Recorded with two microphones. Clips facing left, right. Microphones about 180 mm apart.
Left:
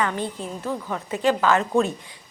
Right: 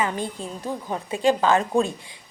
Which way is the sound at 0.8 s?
25° right (ahead or behind).